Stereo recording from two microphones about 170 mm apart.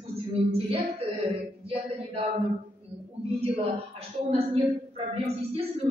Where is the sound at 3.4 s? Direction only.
35° right (ahead or behind).